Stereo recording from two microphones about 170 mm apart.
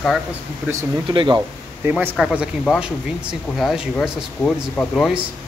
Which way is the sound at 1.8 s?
10° right (ahead or behind).